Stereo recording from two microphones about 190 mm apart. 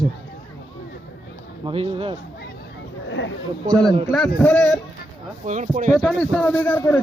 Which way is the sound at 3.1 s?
75° left (ahead or behind).